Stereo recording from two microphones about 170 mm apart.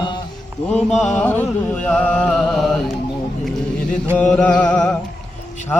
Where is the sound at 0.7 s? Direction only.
5° left (ahead or behind).